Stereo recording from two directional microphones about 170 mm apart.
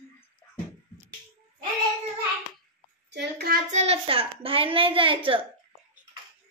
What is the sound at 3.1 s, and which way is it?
Child singing, 75° right (ahead or behind).